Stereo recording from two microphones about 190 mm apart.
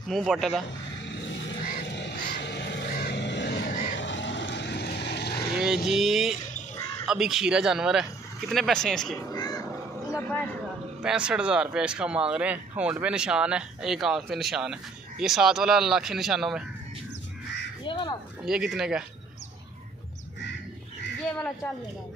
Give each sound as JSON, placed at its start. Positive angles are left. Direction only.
{"t": 0.1, "sound": "speech", "side_deg": 0}
{"t": 1.9, "sound": "music", "side_deg": 65}
{"t": 2.9, "sound": "vehicle", "side_deg": 55}
{"t": 5.9, "sound": "speech", "side_deg": 0}
{"t": 9.3, "sound": "crow", "side_deg": 20}
{"t": 10.1, "sound": "speech", "side_deg": 10}
{"t": 11.0, "sound": "speech", "side_deg": -5}
{"t": 17.8, "sound": "crow", "side_deg": 20}
{"t": 18.4, "sound": "speech", "side_deg": -5}
{"t": 21.2, "sound": "crow", "side_deg": 5}